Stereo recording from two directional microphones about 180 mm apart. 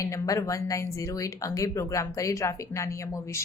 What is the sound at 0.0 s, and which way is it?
A woman's voice, 15° left (ahead or behind).